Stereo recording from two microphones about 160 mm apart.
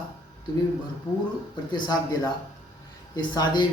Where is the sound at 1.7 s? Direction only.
25° left (ahead or behind).